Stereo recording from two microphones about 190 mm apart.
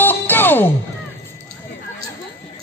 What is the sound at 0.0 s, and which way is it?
Music, 10° left (ahead or behind).